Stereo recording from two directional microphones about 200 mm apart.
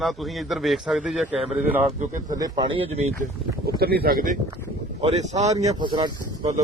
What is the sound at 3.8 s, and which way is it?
Speech, 50° right (ahead or behind).